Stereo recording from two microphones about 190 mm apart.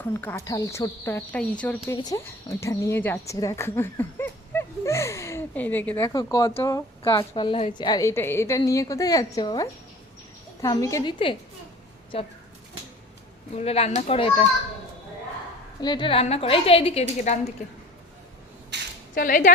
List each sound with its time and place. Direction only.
0.1 s a woman's voice: 15° left (ahead or behind)
2.0 s a woman's voice: 20° left (ahead or behind)
13.6 s a woman's voice: 30° left (ahead or behind)
15.8 s a woman's voice: 25° left (ahead or behind)
18.7 s a sound: 65° right (ahead or behind)
19.1 s speech: 45° left (ahead or behind)